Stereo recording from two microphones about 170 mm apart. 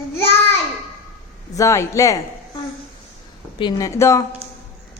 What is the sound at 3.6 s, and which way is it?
Speech, 25° left (ahead or behind).